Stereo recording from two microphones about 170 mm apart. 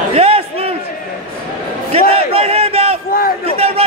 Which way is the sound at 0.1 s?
35° right (ahead or behind).